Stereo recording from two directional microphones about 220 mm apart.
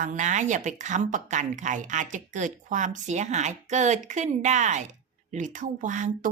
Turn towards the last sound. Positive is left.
turn(degrees=-35)  # may be behind; listen again after turning